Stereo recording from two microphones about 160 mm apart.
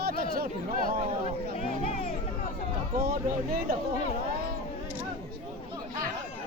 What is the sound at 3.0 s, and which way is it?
Speech, 70° right (ahead or behind).